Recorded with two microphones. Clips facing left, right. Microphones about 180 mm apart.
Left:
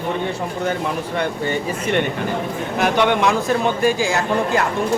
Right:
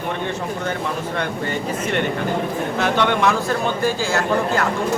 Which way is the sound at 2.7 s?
15° left (ahead or behind).